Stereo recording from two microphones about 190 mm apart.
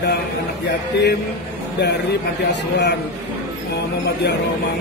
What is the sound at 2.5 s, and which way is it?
Music, 65° left (ahead or behind).